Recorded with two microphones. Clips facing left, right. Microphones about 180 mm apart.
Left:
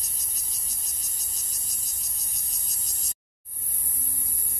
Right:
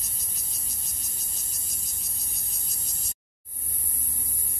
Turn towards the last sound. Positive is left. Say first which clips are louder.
# right 3 dB
turn(degrees=40)  # may be behind; listen again after turning